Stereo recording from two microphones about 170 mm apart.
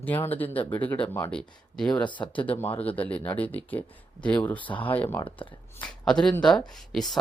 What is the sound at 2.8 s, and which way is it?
Speech, 10° left (ahead or behind).